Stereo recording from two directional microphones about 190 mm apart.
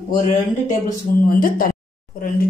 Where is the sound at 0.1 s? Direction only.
45° left (ahead or behind).